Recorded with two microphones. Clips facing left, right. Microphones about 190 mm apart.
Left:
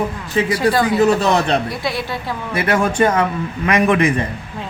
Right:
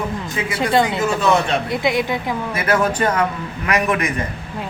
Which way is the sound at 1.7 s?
20° right (ahead or behind).